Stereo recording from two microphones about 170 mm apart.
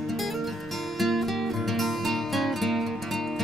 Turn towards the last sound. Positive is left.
turn(degrees=0)  # may be behind; listen again after turning